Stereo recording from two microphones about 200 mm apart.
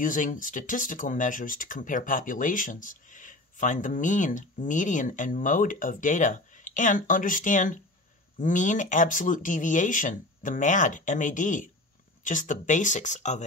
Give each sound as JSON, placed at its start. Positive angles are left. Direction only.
{"t": 0.0, "sound": "speech", "side_deg": 40}